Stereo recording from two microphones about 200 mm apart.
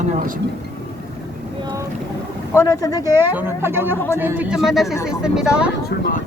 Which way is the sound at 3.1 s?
10° right (ahead or behind).